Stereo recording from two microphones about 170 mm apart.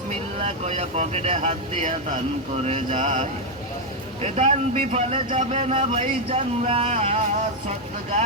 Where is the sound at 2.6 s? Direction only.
45° right (ahead or behind).